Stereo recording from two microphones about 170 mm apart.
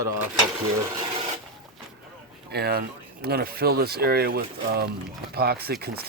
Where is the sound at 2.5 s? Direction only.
70° right (ahead or behind).